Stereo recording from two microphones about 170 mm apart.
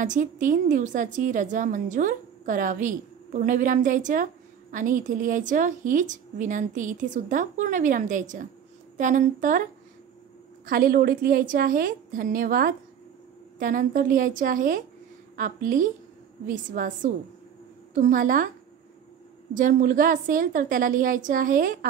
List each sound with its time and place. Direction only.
0.0 s a woman's voice: 50° right (ahead or behind)
19.5 s a woman's voice: 50° right (ahead or behind)